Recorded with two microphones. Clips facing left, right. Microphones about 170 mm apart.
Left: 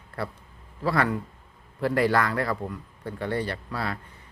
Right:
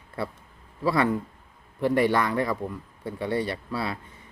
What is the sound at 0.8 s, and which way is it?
Speech, 20° right (ahead or behind).